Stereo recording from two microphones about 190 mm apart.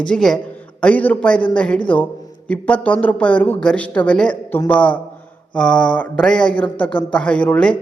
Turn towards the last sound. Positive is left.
turn(degrees=5)  # may be behind; listen again after turning